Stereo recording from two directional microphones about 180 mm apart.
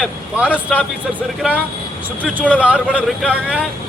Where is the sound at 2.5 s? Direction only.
5° right (ahead or behind).